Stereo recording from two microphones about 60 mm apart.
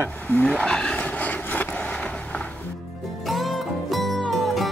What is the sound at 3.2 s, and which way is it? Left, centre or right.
Music, centre.